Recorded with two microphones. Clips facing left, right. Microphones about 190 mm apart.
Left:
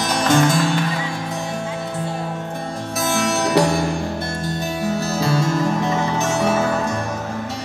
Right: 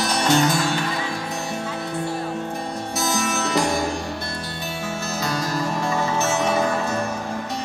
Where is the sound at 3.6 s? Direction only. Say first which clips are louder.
Left 5 dB; 70° left (ahead or behind).